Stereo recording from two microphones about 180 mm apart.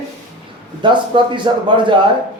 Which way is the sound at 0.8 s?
25° right (ahead or behind).